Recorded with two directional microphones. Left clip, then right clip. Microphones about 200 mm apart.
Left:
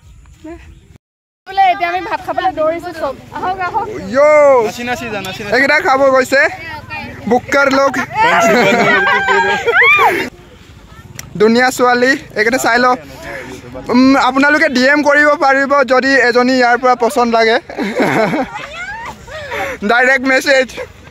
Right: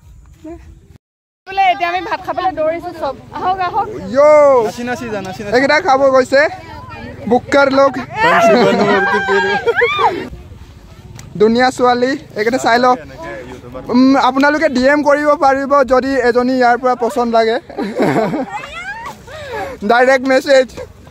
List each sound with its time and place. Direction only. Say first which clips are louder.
1.5 s speech: left 1 dB; 10° right (ahead or behind)
4.6 s speech: left 1 dB; 45° right (ahead or behind)
5.5 s speech: even; centre (ahead or behind)
6.7 s a sound: left 6 dB; 20° left (ahead or behind)
7.2 s speech: even; centre (ahead or behind)
8.1 s speech: even; 30° right (ahead or behind)
8.9 s speech: left 2 dB; 25° left (ahead or behind)
11.1 s speech: left 1 dB; centre (ahead or behind)
18.5 s a sound: even; 35° right (ahead or behind)
19.5 s speech: even; centre (ahead or behind)